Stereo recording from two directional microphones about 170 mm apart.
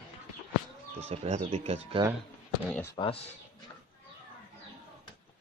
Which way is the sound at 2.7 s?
10° left (ahead or behind).